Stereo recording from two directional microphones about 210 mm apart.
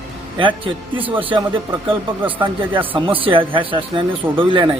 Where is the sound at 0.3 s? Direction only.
25° right (ahead or behind).